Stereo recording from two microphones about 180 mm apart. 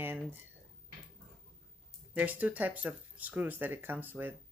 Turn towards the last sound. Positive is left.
turn(degrees=-10)  # may be behind; listen again after turning